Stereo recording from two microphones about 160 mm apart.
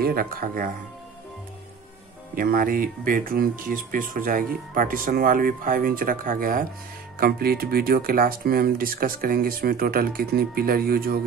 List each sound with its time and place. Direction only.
0.0 s speech: 65° right (ahead or behind)
2.3 s speech: 65° right (ahead or behind)